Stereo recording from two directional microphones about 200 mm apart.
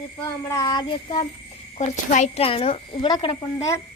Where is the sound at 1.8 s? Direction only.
35° left (ahead or behind).